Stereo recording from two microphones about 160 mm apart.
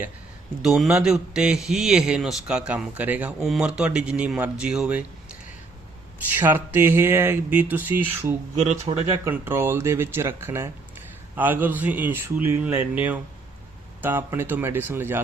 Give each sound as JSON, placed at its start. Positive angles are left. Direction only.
{"t": 0.6, "sound": "a man's voice", "side_deg": -5}
{"t": 8.9, "sound": "speech", "side_deg": -35}
{"t": 9.2, "sound": "speech", "side_deg": -15}